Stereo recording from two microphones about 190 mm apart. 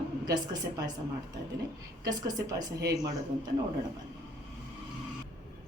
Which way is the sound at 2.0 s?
20° right (ahead or behind).